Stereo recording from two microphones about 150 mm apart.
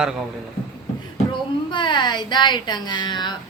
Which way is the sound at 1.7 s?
30° left (ahead or behind).